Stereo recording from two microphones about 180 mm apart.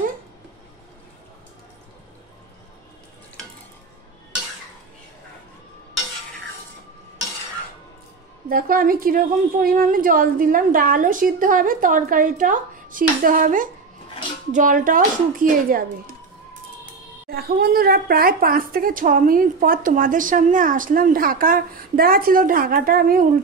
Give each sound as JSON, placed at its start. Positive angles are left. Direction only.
{"t": 8.5, "sound": "speech", "side_deg": -50}
{"t": 17.3, "sound": "speech", "side_deg": -60}